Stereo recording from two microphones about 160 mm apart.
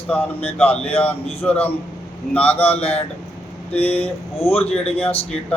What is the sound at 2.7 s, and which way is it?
Speech, 40° left (ahead or behind).